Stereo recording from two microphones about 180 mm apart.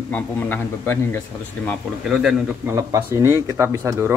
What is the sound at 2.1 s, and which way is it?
Speech, 5° right (ahead or behind).